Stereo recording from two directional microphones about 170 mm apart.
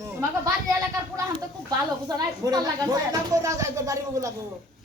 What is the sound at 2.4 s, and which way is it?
Speech, 20° right (ahead or behind).